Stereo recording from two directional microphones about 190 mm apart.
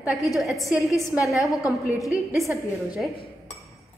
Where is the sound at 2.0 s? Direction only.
15° left (ahead or behind).